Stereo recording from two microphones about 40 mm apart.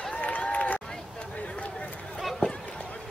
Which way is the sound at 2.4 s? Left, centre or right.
Left.